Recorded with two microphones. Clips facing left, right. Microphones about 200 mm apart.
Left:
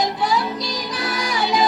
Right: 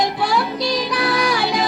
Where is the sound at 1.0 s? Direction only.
65° right (ahead or behind).